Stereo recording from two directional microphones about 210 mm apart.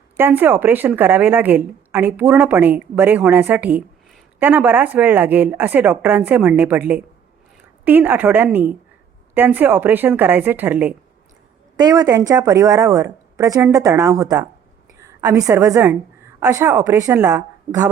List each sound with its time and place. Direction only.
0.2 s a woman's voice: 10° right (ahead or behind)
15.4 s a woman's voice: 15° right (ahead or behind)